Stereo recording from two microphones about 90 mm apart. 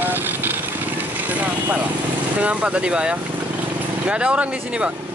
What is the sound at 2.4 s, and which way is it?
Speech, 15° right (ahead or behind).